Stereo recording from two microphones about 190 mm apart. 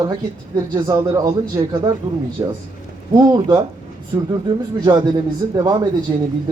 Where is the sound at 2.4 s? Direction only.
20° right (ahead or behind).